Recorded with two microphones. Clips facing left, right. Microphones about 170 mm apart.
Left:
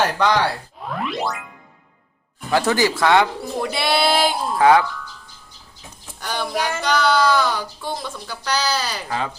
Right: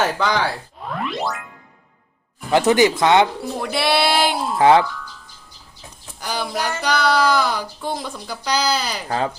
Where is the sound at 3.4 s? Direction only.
Centre (ahead or behind).